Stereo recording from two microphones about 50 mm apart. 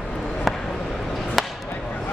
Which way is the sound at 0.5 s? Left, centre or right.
Centre.